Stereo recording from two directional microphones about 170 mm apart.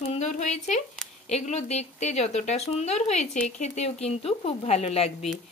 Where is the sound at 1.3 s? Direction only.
40° left (ahead or behind).